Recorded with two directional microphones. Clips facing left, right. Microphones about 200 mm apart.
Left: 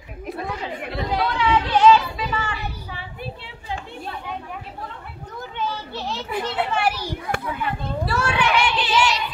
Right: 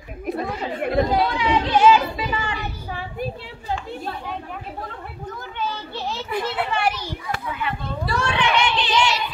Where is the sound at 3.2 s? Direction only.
40° right (ahead or behind).